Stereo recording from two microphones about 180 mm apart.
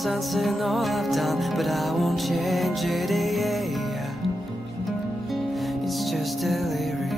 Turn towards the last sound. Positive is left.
turn(degrees=0)  # may be behind; listen again after turning